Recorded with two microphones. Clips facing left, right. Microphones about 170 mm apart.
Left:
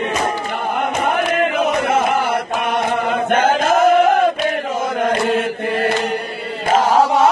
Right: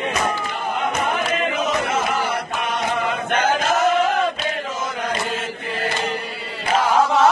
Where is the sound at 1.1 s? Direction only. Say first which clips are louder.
Left 5 dB; 55° left (ahead or behind).